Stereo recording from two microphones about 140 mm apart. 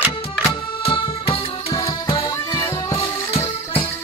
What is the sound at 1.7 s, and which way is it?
Music, 25° left (ahead or behind).